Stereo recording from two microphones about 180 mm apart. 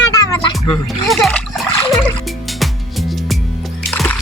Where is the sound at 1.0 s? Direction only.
Centre (ahead or behind).